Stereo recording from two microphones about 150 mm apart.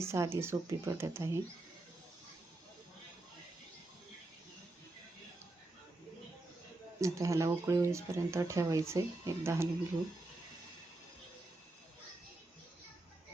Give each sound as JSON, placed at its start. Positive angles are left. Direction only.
{"t": 0.0, "sound": "speech", "side_deg": -15}
{"t": 7.0, "sound": "speech", "side_deg": -20}